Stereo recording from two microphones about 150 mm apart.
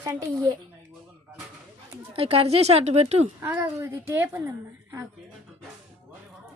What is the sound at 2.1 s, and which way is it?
Speech, 40° right (ahead or behind).